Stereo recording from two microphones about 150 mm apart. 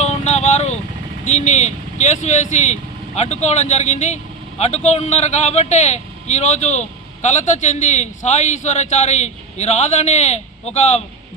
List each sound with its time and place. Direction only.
0.0 s vehicle: 45° left (ahead or behind)
1.2 s speech: 50° left (ahead or behind)